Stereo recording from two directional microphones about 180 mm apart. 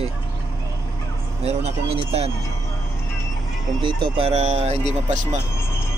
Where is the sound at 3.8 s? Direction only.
30° right (ahead or behind).